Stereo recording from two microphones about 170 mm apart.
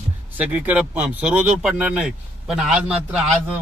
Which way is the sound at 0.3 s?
10° right (ahead or behind).